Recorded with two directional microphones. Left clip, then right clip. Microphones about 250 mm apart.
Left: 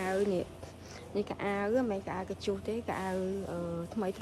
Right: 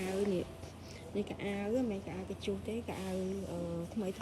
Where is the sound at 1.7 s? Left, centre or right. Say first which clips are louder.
Left 5 dB; centre.